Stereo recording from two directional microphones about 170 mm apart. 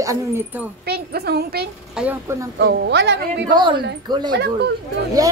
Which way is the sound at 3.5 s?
30° right (ahead or behind).